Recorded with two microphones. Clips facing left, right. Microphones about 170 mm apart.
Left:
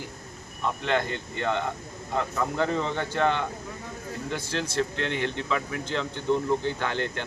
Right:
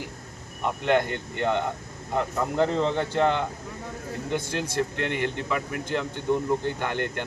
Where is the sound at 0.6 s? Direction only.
15° right (ahead or behind).